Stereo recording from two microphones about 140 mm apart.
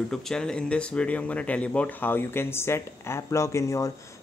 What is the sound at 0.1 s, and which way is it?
Speech, 5° left (ahead or behind).